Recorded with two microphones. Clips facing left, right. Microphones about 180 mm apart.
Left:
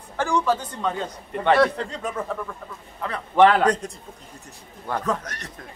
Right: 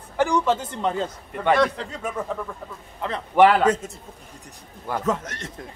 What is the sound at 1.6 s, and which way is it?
A man's voice, centre (ahead or behind).